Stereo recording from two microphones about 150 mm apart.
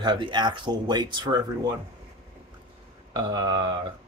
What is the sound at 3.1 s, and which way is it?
Speech, 30° right (ahead or behind).